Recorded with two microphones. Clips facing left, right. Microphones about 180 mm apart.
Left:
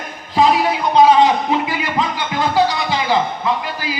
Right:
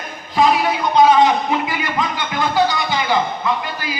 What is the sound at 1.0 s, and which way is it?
Music, 30° left (ahead or behind).